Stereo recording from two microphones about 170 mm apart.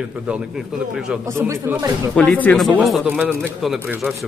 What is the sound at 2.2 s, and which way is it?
A man's voice, 10° left (ahead or behind).